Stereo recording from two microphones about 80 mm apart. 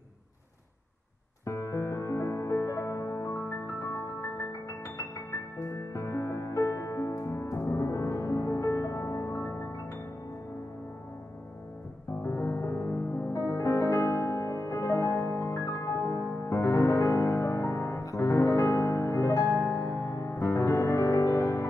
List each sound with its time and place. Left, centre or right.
1.4 s music: left
12.2 s music: left